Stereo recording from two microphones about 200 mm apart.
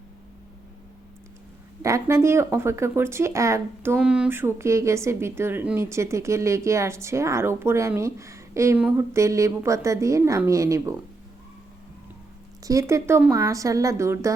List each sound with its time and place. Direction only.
1.8 s speech: 15° right (ahead or behind)
12.6 s speech: 15° right (ahead or behind)